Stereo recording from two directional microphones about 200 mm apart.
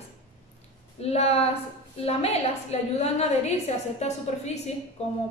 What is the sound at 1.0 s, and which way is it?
A woman's voice, 30° left (ahead or behind).